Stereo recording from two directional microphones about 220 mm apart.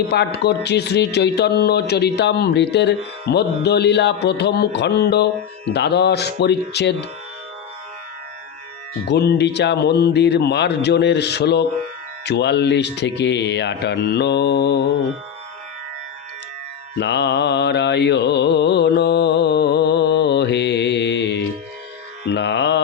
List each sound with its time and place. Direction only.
0.1 s speech: 50° left (ahead or behind)
9.0 s speech: 50° left (ahead or behind)
17.0 s mantra: 50° left (ahead or behind)